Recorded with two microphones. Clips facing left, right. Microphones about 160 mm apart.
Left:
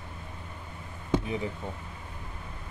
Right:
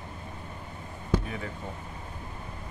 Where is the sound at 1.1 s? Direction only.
20° left (ahead or behind).